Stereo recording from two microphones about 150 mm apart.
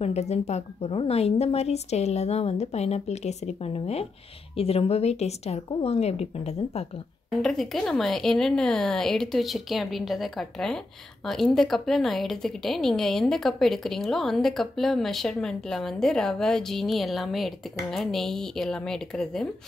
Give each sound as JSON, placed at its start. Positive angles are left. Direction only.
{"t": 0.0, "sound": "a woman's voice", "side_deg": 45}
{"t": 7.4, "sound": "a woman's voice", "side_deg": 0}